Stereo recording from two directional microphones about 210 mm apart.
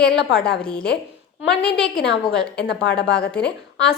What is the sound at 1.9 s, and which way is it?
A woman's voice, 55° left (ahead or behind).